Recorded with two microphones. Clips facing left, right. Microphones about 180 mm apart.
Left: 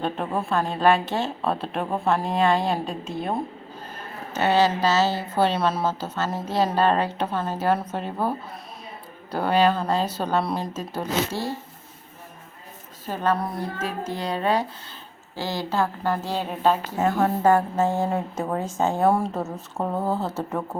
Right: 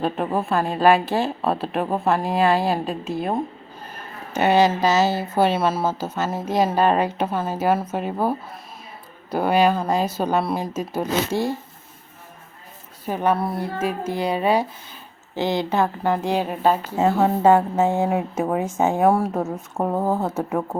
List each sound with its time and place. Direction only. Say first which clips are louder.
0.0 s a woman's voice: right 4 dB; 5° right (ahead or behind)
4.4 s a woman's voice: right 3 dB; 15° right (ahead or behind)
13.1 s a woman's voice: right 3 dB; 10° right (ahead or behind)
17.0 s a woman's voice: right 4 dB; 25° right (ahead or behind)